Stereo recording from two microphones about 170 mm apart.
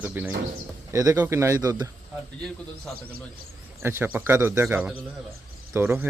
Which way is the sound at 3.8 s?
15° right (ahead or behind).